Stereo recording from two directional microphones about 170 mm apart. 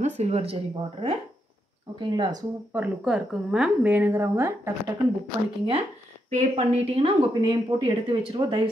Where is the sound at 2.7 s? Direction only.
5° right (ahead or behind).